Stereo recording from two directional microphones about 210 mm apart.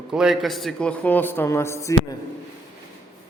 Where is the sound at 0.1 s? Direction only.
Centre (ahead or behind); by 2.0 s 15° left (ahead or behind).